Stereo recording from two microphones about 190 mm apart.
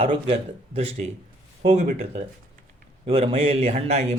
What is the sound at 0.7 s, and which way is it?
Speech, 35° right (ahead or behind).